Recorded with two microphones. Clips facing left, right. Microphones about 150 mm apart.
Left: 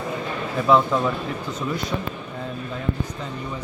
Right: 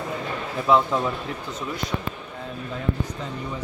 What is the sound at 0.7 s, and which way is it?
Speech, 15° right (ahead or behind).